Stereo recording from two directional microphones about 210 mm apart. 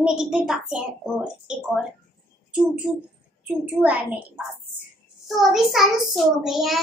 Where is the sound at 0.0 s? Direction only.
5° right (ahead or behind).